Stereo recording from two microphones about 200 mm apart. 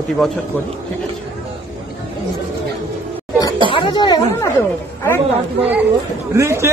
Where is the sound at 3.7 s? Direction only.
25° left (ahead or behind).